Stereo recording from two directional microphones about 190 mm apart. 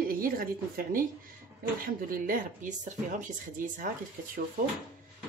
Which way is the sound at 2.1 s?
45° right (ahead or behind).